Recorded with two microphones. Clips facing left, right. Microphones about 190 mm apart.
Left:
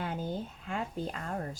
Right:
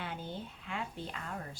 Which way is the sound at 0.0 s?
40° left (ahead or behind).